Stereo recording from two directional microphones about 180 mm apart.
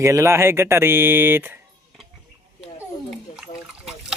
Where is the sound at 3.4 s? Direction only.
5° right (ahead or behind).